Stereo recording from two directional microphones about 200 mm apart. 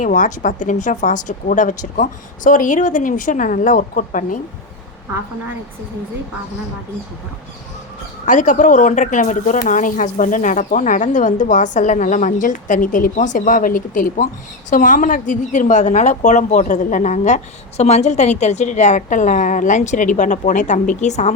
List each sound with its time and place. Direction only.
0.0 s a woman's voice: 40° left (ahead or behind)
8.2 s a woman's voice: 40° left (ahead or behind)